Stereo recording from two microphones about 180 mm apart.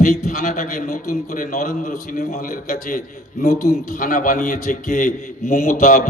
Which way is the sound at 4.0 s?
50° left (ahead or behind).